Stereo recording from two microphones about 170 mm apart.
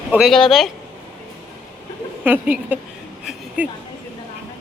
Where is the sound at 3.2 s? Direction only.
5° right (ahead or behind).